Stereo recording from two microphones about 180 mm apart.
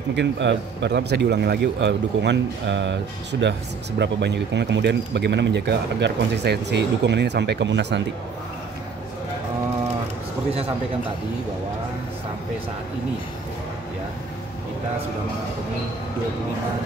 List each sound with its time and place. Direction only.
0.1 s speech: 75° right (ahead or behind)